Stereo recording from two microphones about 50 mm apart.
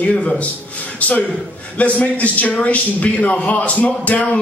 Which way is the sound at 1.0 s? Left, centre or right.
Left.